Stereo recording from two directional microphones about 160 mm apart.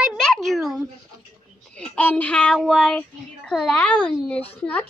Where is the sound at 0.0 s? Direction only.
Centre (ahead or behind).